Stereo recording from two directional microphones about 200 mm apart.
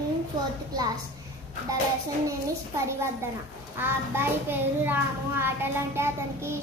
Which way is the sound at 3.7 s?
10° right (ahead or behind).